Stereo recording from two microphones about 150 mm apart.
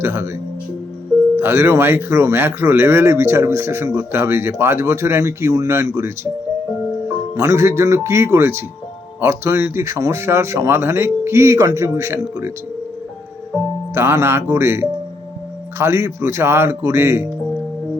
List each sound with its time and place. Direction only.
0.0 s speech: 15° right (ahead or behind)
1.4 s speech: 15° right (ahead or behind)
7.3 s speech: 15° right (ahead or behind)
13.9 s speech: 15° right (ahead or behind)